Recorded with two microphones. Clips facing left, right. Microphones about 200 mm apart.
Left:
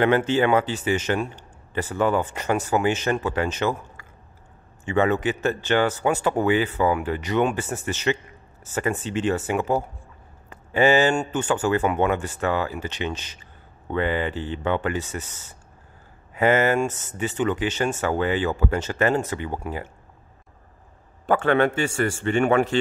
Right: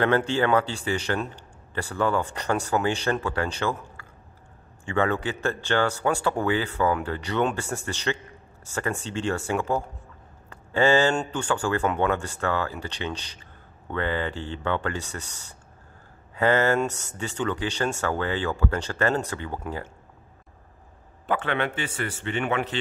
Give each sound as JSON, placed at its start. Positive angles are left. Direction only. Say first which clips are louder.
{"t": 0.4, "sound": "a man's voice", "louder": "left 2 dB", "side_deg": 15}
{"t": 21.3, "sound": "a man's voice", "louder": "left 7 dB", "side_deg": 45}